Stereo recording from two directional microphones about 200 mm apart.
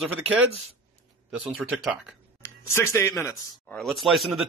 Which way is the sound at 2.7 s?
15° left (ahead or behind).